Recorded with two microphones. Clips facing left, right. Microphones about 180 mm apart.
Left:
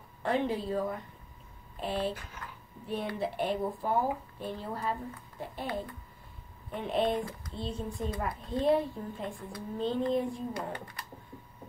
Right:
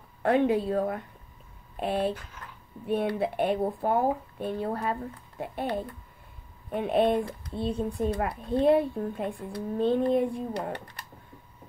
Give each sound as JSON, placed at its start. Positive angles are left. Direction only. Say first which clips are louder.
{"t": 0.2, "sound": "speech", "louder": "right 7 dB", "side_deg": -60}
{"t": 6.7, "sound": "speech", "louder": "right 6 dB", "side_deg": -55}